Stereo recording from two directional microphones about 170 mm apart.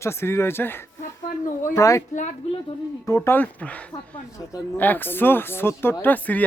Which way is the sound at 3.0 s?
15° left (ahead or behind).